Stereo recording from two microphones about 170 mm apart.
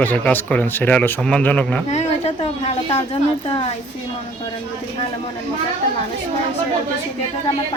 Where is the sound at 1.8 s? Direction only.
40° left (ahead or behind).